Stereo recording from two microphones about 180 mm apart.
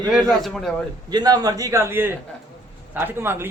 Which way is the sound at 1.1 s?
20° right (ahead or behind).